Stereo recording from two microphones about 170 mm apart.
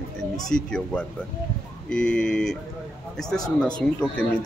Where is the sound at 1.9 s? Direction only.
5° left (ahead or behind).